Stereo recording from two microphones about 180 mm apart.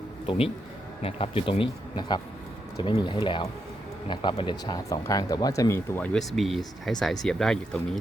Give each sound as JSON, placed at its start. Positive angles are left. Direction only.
{"t": 0.3, "sound": "speech", "side_deg": 30}
{"t": 6.1, "sound": "speech", "side_deg": 0}